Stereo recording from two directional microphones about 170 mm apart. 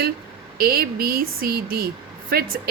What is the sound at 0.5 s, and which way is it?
Speech, 60° right (ahead or behind).